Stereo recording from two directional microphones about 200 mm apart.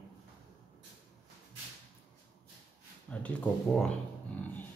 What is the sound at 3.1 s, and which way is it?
Speech, 5° left (ahead or behind).